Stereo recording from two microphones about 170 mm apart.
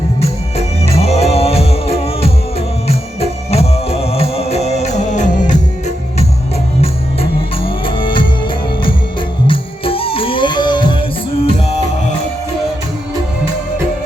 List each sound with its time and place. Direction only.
0.2 s music: 40° left (ahead or behind)
6.8 s music: 35° left (ahead or behind)